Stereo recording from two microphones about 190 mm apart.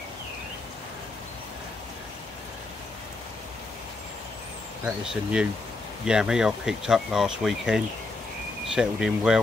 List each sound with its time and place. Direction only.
4.8 s speech: 5° right (ahead or behind)